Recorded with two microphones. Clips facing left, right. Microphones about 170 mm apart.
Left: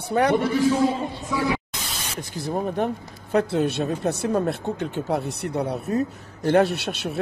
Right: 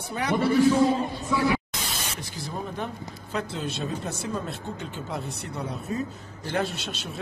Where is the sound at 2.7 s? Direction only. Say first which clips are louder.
Left 8 dB; 60° left (ahead or behind).